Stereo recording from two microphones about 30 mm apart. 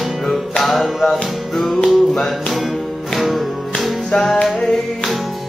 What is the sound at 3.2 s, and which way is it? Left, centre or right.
Music, centre.